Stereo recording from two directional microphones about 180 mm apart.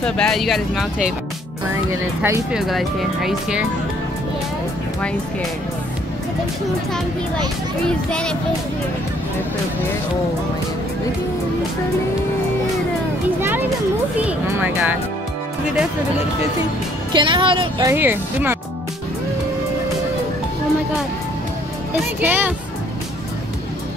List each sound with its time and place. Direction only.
0.0 s speech: 5° left (ahead or behind)
1.9 s speech: 15° right (ahead or behind)
2.5 s speech: centre (ahead or behind)
8.1 s speech: 5° left (ahead or behind)
14.2 s speech: 10° right (ahead or behind)
17.1 s speech: 25° right (ahead or behind)
17.8 s speech: 10° right (ahead or behind)
22.2 s speech: 10° right (ahead or behind)